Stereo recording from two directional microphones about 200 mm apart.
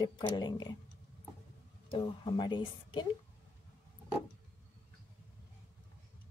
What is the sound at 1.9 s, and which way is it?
A woman's voice, 25° left (ahead or behind).